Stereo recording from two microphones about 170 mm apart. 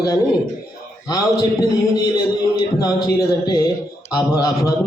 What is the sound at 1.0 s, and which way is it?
A man's voice, 25° left (ahead or behind).